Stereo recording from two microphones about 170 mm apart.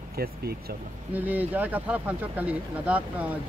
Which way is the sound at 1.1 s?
10° right (ahead or behind).